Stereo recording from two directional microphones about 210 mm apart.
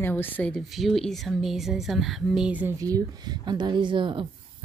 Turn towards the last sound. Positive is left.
turn(degrees=-25)  # may be behind; listen again after turning